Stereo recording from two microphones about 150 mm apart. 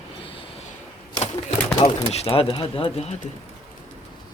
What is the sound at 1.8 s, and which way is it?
Speech, 40° left (ahead or behind).